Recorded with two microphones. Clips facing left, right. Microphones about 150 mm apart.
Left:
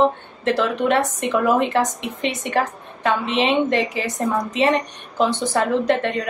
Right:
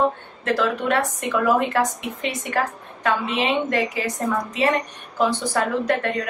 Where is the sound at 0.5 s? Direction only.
20° left (ahead or behind).